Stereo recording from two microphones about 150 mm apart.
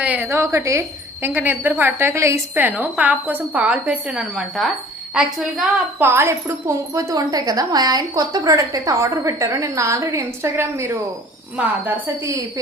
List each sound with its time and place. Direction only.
0.0 s a woman's voice: 10° right (ahead or behind)
6.0 s a woman's voice: 15° right (ahead or behind)